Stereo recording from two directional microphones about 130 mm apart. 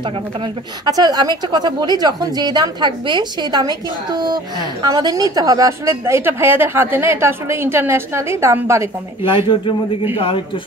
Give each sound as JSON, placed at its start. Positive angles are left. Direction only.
{"t": 0.8, "sound": "a woman's voice", "side_deg": -30}
{"t": 10.1, "sound": "a man's voice", "side_deg": 40}